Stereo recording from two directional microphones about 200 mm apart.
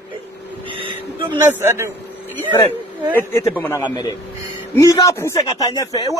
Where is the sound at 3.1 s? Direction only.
15° left (ahead or behind).